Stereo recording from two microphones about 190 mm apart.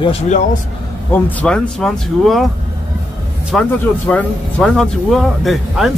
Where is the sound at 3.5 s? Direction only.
Centre (ahead or behind).